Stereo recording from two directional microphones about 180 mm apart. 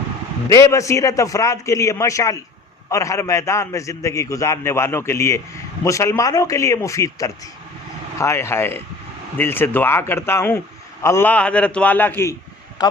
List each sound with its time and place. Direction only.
0.5 s a man's voice: 15° left (ahead or behind)